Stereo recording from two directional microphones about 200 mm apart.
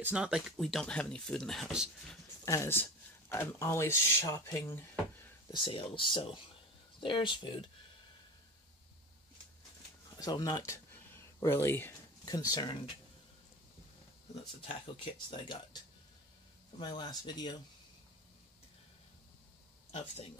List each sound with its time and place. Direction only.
0.0 s speech: 5° right (ahead or behind)
2.4 s speech: 15° left (ahead or behind)
5.5 s speech: 25° left (ahead or behind)
10.1 s speech: 20° left (ahead or behind)
15.4 s speech: 25° left (ahead or behind)
16.8 s speech: 20° left (ahead or behind)
19.9 s speech: 35° left (ahead or behind)